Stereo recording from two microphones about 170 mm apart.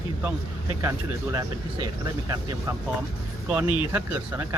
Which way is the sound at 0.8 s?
20° right (ahead or behind).